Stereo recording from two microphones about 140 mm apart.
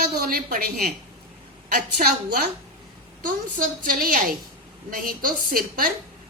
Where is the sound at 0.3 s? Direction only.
90° right.